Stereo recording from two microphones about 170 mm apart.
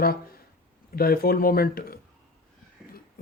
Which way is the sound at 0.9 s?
60° left (ahead or behind).